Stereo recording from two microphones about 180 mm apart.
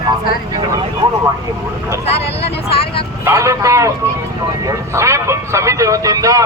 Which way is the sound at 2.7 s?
30° left (ahead or behind).